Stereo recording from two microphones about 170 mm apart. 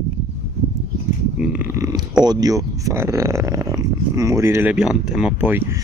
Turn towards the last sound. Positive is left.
turn(degrees=-15)  # may be behind; listen again after turning